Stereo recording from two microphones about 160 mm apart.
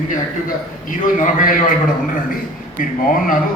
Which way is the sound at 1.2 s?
55° left (ahead or behind).